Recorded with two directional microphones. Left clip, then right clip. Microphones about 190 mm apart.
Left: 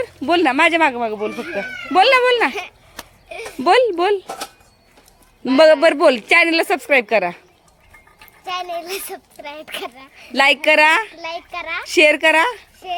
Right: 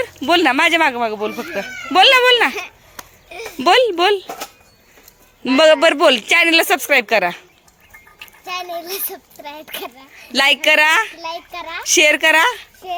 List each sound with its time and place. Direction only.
0.0 s a child's voice: centre (ahead or behind)
2.5 s speech: 65° left (ahead or behind)
3.6 s a child's voice: 5° left (ahead or behind)
5.5 s a child's voice: 10° left (ahead or behind)
8.4 s a child's voice: 5° left (ahead or behind)